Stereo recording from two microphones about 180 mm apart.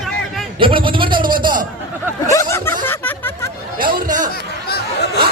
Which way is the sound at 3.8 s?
50° right (ahead or behind).